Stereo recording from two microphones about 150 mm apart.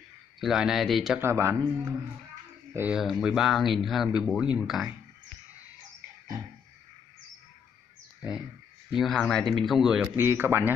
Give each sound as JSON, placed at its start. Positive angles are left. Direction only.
{"t": 0.4, "sound": "speech", "side_deg": -5}
{"t": 1.2, "sound": "speech", "side_deg": -20}
{"t": 3.0, "sound": "speech", "side_deg": 0}
{"t": 8.2, "sound": "speech", "side_deg": -5}
{"t": 10.1, "sound": "a man's voice", "side_deg": -15}